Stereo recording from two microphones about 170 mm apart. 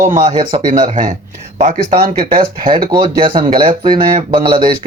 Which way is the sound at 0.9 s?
45° right (ahead or behind).